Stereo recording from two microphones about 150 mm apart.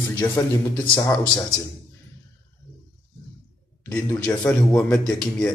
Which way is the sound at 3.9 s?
10° left (ahead or behind).